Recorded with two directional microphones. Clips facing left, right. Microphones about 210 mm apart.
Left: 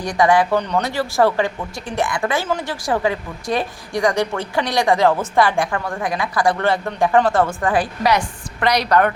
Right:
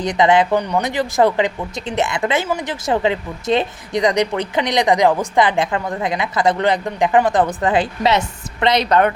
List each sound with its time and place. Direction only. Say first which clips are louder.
0.0 s speech: right 1 dB; 20° right (ahead or behind)